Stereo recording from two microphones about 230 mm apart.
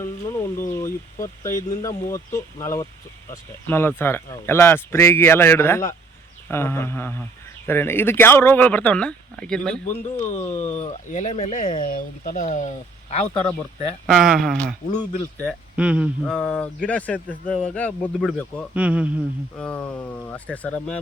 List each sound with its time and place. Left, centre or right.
0.0 s speech: centre
10.2 s speech: left
14.1 s speech: centre
19.5 s speech: centre